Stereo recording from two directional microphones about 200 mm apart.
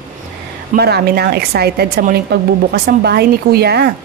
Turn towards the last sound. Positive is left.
turn(degrees=-55)  # may be behind; listen again after turning